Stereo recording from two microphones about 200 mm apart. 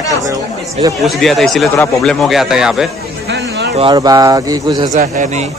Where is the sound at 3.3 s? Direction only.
60° right (ahead or behind).